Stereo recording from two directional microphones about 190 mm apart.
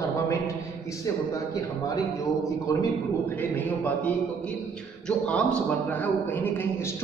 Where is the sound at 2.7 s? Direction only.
20° left (ahead or behind).